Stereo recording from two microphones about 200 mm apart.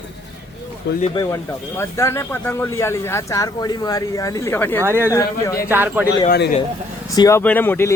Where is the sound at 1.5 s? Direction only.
10° left (ahead or behind).